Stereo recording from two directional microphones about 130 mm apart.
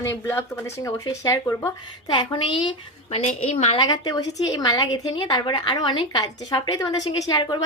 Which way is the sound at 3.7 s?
30° left (ahead or behind).